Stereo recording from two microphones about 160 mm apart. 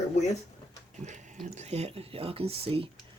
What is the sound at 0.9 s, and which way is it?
Speech, 50° right (ahead or behind).